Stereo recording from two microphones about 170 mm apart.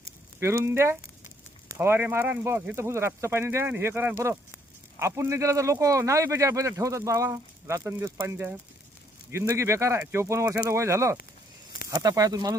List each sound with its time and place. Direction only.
0.3 s speech: 15° right (ahead or behind)